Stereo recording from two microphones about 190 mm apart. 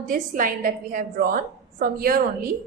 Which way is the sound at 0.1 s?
45° right (ahead or behind).